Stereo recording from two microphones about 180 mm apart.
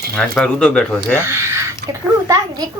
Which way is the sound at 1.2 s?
15° right (ahead or behind).